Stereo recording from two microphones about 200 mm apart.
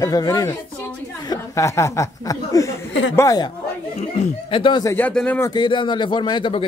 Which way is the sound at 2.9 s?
65° left (ahead or behind).